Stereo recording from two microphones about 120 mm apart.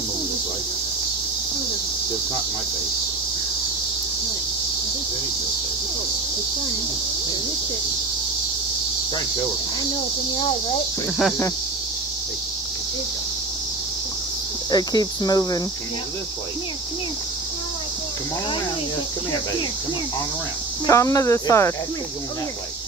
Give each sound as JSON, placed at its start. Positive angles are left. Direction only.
{"t": 14.7, "sound": "speech", "side_deg": 30}
{"t": 20.8, "sound": "speech", "side_deg": 25}